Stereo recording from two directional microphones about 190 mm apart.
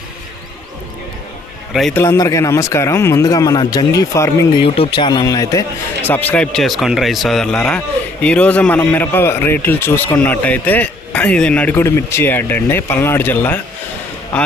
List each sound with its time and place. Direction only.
1.7 s speech: centre (ahead or behind)
2.0 s a man's voice: 15° left (ahead or behind)
4.6 s a man's voice: 30° left (ahead or behind); by 13.6 s 10° left (ahead or behind)